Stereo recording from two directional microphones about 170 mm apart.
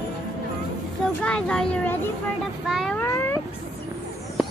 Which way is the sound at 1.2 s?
5° left (ahead or behind).